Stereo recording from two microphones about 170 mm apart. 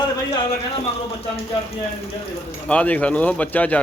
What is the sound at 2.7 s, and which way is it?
Speech, 10° left (ahead or behind).